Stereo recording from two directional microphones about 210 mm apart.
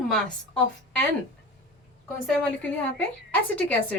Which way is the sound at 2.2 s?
Centre (ahead or behind).